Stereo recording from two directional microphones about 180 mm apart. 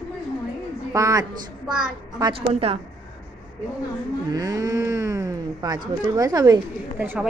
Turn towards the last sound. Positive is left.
turn(degrees=-10)  # may be behind; listen again after turning